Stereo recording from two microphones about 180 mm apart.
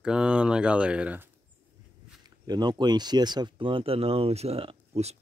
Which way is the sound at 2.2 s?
20° right (ahead or behind).